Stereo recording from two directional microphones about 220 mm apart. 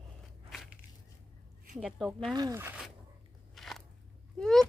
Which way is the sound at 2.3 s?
15° right (ahead or behind).